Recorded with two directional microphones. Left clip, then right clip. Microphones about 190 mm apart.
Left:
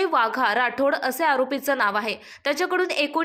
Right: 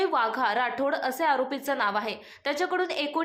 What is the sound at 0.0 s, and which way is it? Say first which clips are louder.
A woman's voice: left 4 dB; 15° left (ahead or behind).